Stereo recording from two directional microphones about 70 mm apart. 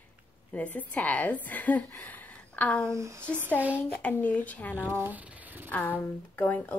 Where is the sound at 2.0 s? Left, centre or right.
Left.